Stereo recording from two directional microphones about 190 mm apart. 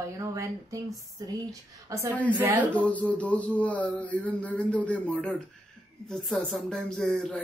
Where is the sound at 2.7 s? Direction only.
5° left (ahead or behind).